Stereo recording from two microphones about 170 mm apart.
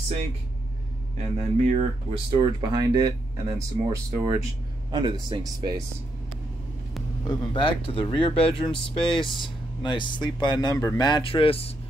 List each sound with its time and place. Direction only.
1.1 s speech: 45° right (ahead or behind)
2.3 s speech: 25° right (ahead or behind)
7.2 s speech: 30° left (ahead or behind)